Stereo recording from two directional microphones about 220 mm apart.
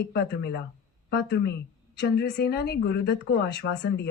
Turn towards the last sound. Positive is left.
turn(degrees=50)  # may be behind; listen again after turning